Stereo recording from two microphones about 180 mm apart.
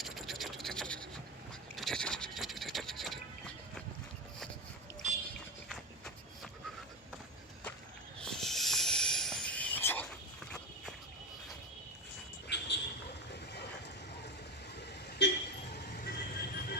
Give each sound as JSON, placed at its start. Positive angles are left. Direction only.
{"t": 0.0, "sound": "a sound", "side_deg": 0}
{"t": 1.7, "sound": "vehicle", "side_deg": 0}
{"t": 8.2, "sound": "a sound", "side_deg": 0}
{"t": 12.5, "sound": "vehicle", "side_deg": 70}
{"t": 15.2, "sound": "vehicle", "side_deg": 75}
{"t": 15.7, "sound": "vehicle", "side_deg": 65}